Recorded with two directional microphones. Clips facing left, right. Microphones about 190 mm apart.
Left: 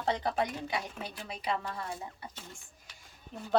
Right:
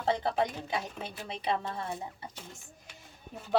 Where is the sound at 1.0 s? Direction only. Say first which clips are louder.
Right 2 dB; 25° right (ahead or behind).